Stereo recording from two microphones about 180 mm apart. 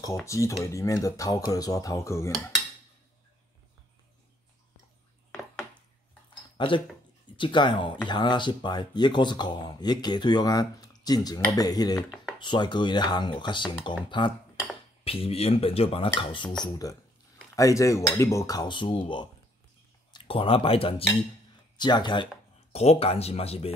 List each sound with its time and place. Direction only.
0.0 s cutlery: 15° left (ahead or behind)
6.5 s speech: 25° left (ahead or behind)